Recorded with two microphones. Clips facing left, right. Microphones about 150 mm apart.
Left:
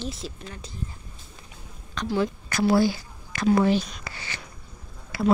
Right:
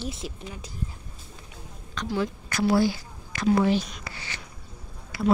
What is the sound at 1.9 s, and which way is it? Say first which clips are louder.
Speech: left 3 dB; 30° left (ahead or behind).